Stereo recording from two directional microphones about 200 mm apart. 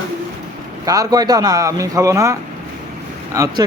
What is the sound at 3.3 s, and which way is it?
Speech, 15° right (ahead or behind).